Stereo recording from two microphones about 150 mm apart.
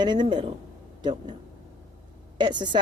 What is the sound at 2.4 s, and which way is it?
Speech, 30° right (ahead or behind).